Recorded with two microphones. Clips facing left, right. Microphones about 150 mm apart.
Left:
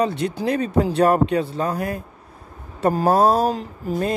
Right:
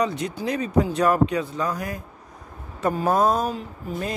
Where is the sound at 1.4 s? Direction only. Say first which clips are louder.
Left 3 dB; 30° left (ahead or behind).